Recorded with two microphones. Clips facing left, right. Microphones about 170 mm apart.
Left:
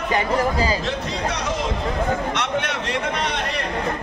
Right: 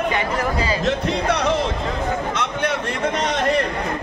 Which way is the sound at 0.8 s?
60° right (ahead or behind).